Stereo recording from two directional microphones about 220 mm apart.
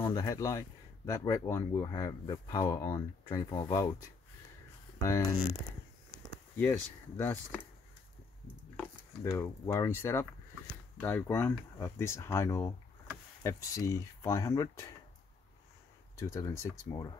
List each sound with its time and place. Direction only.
0.0 s speech: 15° left (ahead or behind)
5.0 s speech: 15° left (ahead or behind)
6.5 s speech: 10° left (ahead or behind)
9.2 s speech: 15° left (ahead or behind)
16.2 s speech: 15° left (ahead or behind)